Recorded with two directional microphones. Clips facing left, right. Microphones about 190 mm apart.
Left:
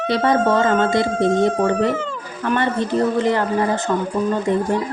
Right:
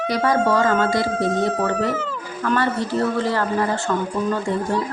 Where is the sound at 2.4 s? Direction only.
20° left (ahead or behind).